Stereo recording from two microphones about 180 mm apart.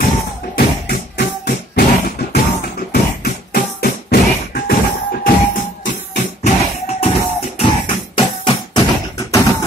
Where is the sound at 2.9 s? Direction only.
60° left (ahead or behind).